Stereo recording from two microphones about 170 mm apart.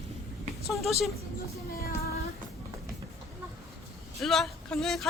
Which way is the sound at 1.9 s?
65° left (ahead or behind).